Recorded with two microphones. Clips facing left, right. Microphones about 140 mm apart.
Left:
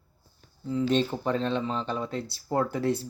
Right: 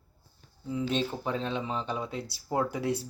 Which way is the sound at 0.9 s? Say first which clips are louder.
Left 5 dB; 5° right (ahead or behind).